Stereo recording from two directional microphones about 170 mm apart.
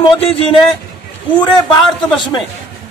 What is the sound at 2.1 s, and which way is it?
Speech, 30° left (ahead or behind).